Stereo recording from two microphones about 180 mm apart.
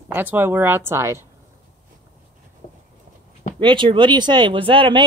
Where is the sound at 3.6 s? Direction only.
25° right (ahead or behind).